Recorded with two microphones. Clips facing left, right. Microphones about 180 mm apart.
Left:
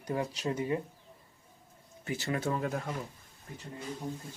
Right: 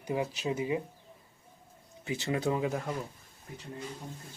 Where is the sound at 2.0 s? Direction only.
15° right (ahead or behind).